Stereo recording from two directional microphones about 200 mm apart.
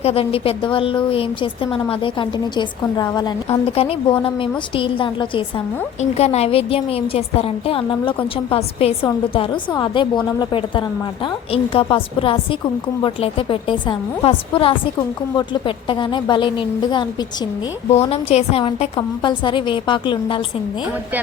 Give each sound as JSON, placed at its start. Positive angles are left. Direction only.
{"t": 0.0, "sound": "a woman's voice", "side_deg": 30}